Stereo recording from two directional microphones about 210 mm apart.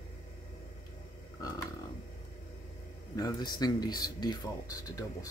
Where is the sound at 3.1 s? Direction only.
20° left (ahead or behind).